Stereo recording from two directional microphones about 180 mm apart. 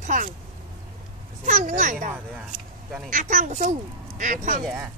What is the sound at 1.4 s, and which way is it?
Speech, 45° right (ahead or behind).